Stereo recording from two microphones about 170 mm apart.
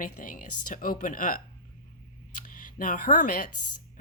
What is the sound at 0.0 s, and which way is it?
Speech, 55° left (ahead or behind).